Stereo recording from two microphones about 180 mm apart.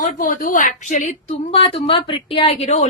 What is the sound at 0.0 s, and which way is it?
A woman's voice, 50° left (ahead or behind).